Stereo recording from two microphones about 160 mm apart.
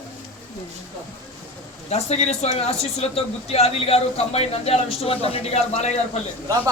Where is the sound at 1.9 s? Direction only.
45° left (ahead or behind).